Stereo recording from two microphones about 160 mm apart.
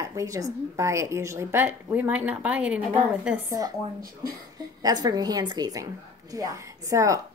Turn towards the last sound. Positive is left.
turn(degrees=-20)  # may be behind; listen again after turning